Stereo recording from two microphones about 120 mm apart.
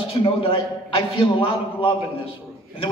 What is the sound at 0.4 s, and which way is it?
A man's voice, 45° left (ahead or behind).